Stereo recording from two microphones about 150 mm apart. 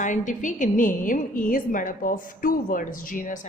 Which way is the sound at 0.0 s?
55° left (ahead or behind).